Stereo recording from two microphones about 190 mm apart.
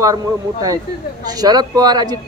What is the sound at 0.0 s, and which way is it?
Speech, 20° right (ahead or behind).